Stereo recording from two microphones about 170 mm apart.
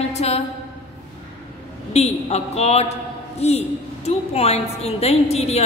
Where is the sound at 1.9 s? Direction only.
40° left (ahead or behind).